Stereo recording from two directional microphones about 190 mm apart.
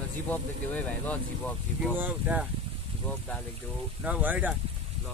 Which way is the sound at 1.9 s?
10° right (ahead or behind).